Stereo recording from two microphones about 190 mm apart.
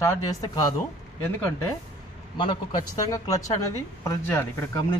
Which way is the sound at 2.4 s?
25° left (ahead or behind).